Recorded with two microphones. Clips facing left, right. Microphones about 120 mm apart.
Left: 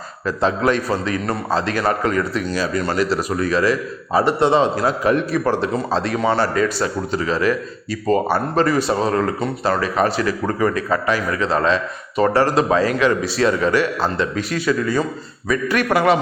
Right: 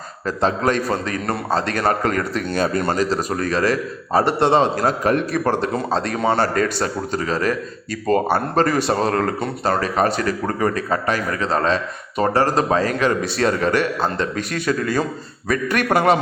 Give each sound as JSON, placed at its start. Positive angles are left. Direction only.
{"t": 0.3, "sound": "speech", "side_deg": -45}